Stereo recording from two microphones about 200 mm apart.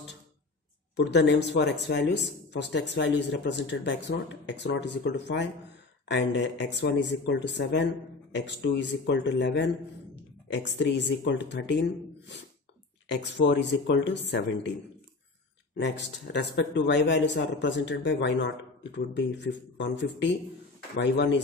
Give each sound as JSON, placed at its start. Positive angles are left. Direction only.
{"t": 0.9, "sound": "a man's voice", "side_deg": 60}
{"t": 13.1, "sound": "a man's voice", "side_deg": 60}
{"t": 15.7, "sound": "a man's voice", "side_deg": 60}